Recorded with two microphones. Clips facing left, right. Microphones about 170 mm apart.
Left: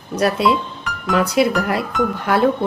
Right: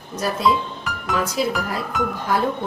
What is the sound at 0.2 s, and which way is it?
Speech, 70° left (ahead or behind).